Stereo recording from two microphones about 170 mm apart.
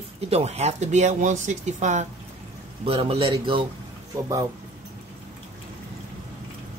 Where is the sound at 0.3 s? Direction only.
40° right (ahead or behind).